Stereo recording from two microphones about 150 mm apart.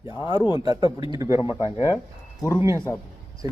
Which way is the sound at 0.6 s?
25° right (ahead or behind).